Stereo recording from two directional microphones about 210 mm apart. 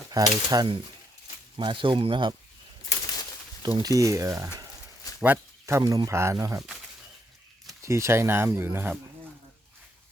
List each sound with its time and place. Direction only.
0.1 s speech: 15° right (ahead or behind)
3.6 s speech: 20° right (ahead or behind)
7.8 s speech: 15° right (ahead or behind)